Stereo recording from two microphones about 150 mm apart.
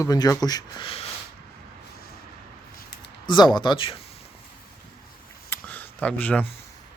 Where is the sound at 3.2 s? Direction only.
30° left (ahead or behind).